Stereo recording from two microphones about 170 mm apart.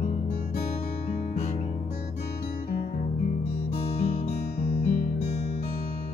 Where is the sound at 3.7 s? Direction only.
35° left (ahead or behind).